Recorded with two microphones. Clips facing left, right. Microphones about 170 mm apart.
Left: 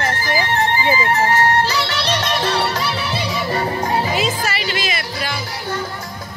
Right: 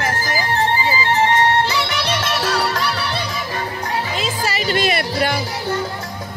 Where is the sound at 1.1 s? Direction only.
25° right (ahead or behind).